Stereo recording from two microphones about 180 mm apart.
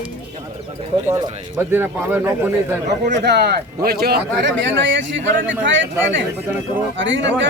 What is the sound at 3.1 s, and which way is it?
Speech, 65° right (ahead or behind).